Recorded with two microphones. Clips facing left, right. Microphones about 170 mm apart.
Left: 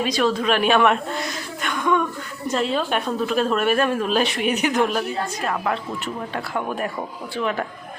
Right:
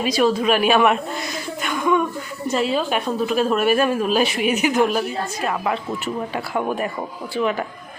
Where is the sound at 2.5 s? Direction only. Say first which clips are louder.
Right 1 dB; 5° right (ahead or behind).